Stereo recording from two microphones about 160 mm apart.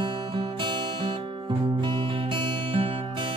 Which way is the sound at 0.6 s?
30° right (ahead or behind).